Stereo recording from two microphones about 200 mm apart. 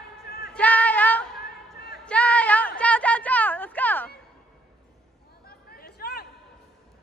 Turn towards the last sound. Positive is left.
turn(degrees=55)  # may be behind; listen again after turning